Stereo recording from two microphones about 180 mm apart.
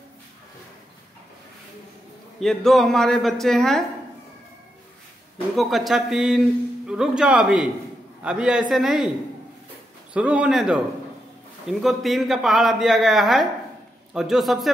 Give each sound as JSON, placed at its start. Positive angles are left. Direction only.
{"t": 2.4, "sound": "a man's voice", "side_deg": 0}
{"t": 5.6, "sound": "a man's voice", "side_deg": 0}
{"t": 10.1, "sound": "a man's voice", "side_deg": -5}